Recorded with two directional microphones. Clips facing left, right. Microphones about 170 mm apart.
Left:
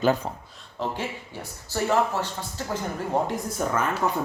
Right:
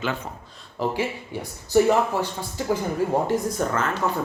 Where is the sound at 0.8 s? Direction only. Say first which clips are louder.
Right 5 dB; 10° right (ahead or behind).